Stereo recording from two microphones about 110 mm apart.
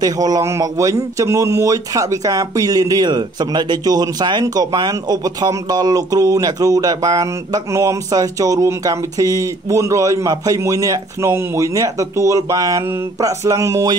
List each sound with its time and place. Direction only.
0.0 s a man's voice: 35° right (ahead or behind)